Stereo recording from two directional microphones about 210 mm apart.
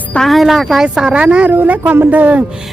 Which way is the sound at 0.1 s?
Centre (ahead or behind).